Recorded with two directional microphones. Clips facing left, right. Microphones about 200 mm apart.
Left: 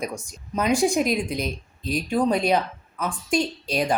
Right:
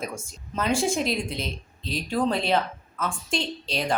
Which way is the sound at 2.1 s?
15° left (ahead or behind).